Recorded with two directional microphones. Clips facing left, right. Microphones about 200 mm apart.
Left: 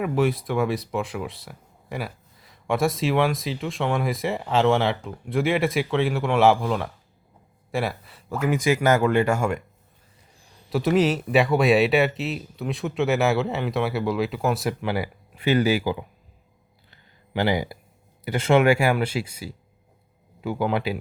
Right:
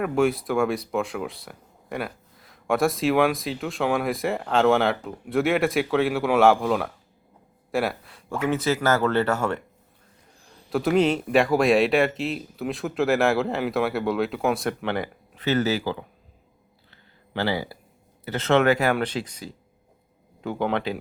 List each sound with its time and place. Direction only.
0.0 s speech: centre (ahead or behind)
10.7 s speech: centre (ahead or behind)
16.9 s a sound: 15° left (ahead or behind)
18.3 s speech: 10° left (ahead or behind)